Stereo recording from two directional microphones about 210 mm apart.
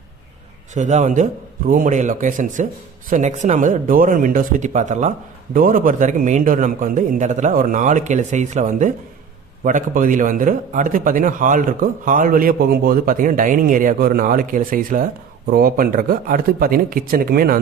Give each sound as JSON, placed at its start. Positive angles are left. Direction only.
{"t": 0.7, "sound": "a man's voice", "side_deg": -35}